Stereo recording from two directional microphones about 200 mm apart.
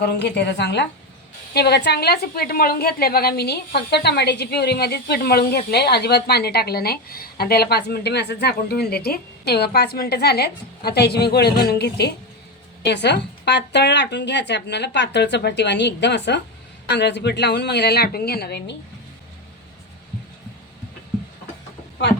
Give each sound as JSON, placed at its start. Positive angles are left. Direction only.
{"t": 0.0, "sound": "a woman's voice", "side_deg": 60}